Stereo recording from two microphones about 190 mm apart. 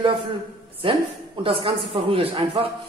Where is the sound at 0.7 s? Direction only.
30° right (ahead or behind).